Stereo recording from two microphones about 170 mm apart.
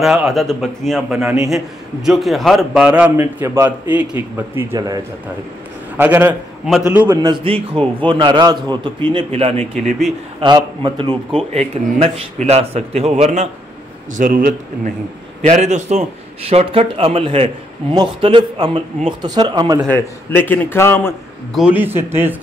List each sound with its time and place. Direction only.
0.0 s a man's voice: centre (ahead or behind); by 5.0 s 20° right (ahead or behind)
5.9 s speech: 10° right (ahead or behind)
7.2 s a man's voice: 30° right (ahead or behind)
9.1 s a man's voice: 35° right (ahead or behind)
11.5 s a man's voice: 35° right (ahead or behind)
14.1 s a man's voice: 55° right (ahead or behind); by 19.8 s 25° right (ahead or behind)
19.9 s a man's voice: 10° left (ahead or behind)
21.5 s speech: 10° right (ahead or behind)